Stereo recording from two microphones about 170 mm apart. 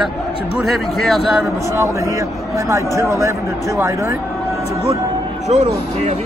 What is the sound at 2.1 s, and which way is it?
Speech, 20° right (ahead or behind).